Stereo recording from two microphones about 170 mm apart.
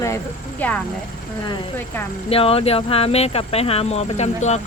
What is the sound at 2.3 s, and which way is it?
Speech, 35° left (ahead or behind).